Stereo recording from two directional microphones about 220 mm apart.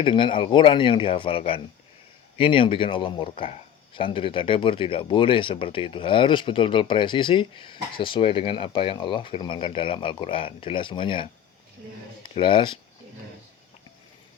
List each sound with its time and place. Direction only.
0.0 s speech: 20° left (ahead or behind)
12.3 s speech: 25° left (ahead or behind)